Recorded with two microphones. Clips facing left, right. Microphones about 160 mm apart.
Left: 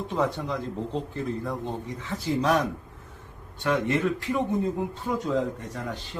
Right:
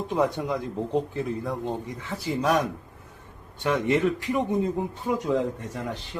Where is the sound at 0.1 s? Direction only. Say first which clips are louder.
Right 3 dB; 15° right (ahead or behind).